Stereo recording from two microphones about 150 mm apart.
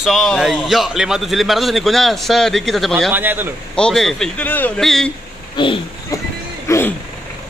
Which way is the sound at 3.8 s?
5° left (ahead or behind).